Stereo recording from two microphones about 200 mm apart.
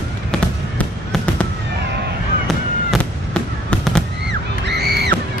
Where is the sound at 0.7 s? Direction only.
5° left (ahead or behind).